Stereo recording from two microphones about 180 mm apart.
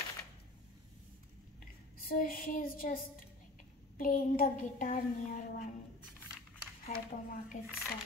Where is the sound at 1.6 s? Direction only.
50° left (ahead or behind).